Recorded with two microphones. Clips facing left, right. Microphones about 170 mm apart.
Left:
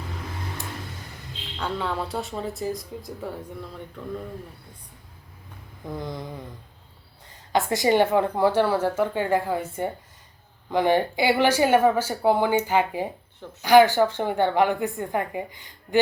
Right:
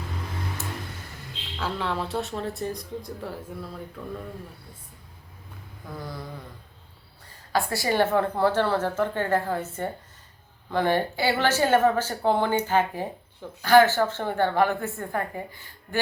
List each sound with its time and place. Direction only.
1.5 s a woman's voice: centre (ahead or behind)
6.0 s mantra: 20° left (ahead or behind)
7.5 s a woman's voice: 20° left (ahead or behind)